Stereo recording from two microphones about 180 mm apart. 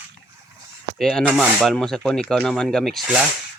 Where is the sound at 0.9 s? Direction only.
Centre (ahead or behind).